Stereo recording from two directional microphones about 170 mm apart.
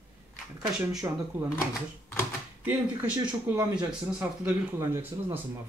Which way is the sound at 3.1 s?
20° right (ahead or behind).